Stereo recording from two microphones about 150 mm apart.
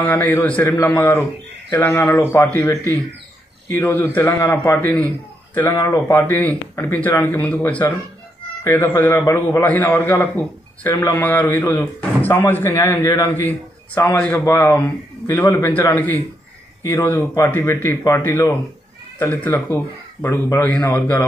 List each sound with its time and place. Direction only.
0.2 s a man's voice: 10° left (ahead or behind)